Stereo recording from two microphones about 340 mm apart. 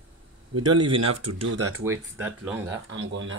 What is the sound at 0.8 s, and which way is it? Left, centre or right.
Speech, centre.